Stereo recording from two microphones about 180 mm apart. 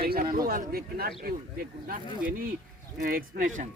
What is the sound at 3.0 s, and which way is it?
Speech, 50° right (ahead or behind).